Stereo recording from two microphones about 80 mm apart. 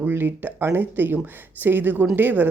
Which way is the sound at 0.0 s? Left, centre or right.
Right.